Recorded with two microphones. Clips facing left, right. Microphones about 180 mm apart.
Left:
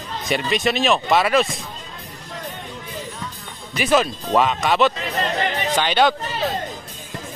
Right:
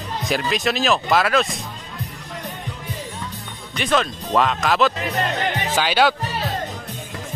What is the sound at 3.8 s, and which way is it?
Speech, 5° left (ahead or behind).